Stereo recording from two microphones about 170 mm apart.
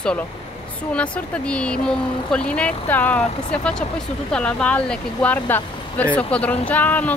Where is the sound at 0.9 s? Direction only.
5° left (ahead or behind).